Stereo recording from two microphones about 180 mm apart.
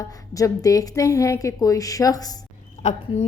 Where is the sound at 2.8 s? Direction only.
40° left (ahead or behind).